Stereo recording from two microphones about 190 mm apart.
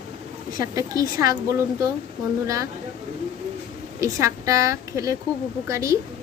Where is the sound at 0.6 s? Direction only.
20° right (ahead or behind).